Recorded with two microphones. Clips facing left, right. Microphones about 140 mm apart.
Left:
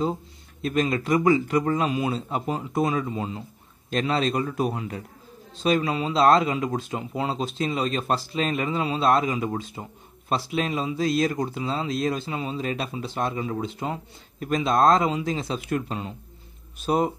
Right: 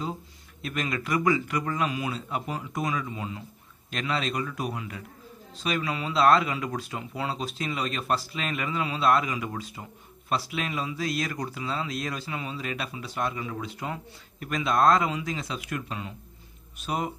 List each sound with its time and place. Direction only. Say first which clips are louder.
0.0 s a man's voice: left 7 dB; 30° left (ahead or behind)